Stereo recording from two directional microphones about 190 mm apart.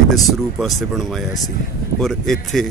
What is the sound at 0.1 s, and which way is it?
Speech, centre (ahead or behind).